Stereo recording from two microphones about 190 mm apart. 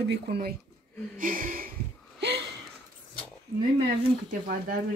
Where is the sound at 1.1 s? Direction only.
45° right (ahead or behind).